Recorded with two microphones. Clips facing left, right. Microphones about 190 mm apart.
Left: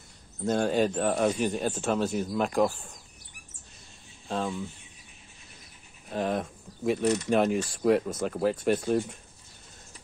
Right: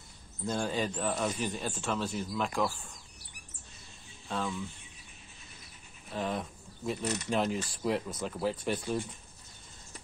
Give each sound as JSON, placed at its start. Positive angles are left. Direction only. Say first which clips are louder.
{"t": 0.5, "sound": "speech", "louder": "left 7 dB", "side_deg": 65}
{"t": 1.7, "sound": "speech", "louder": "left 6 dB", "side_deg": 45}
{"t": 4.3, "sound": "speech", "louder": "left 4 dB", "side_deg": 35}
{"t": 6.0, "sound": "speech", "louder": "left 5 dB", "side_deg": 50}